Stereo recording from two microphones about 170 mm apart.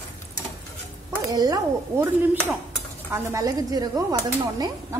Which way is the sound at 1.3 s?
20° right (ahead or behind).